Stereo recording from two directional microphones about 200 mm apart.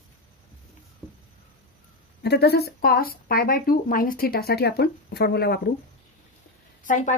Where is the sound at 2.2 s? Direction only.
55° left (ahead or behind).